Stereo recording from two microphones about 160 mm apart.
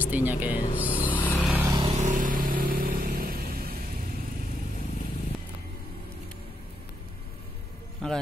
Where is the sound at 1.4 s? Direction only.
10° right (ahead or behind).